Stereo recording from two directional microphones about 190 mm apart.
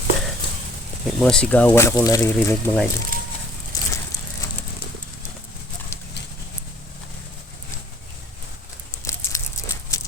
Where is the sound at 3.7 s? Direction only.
20° left (ahead or behind).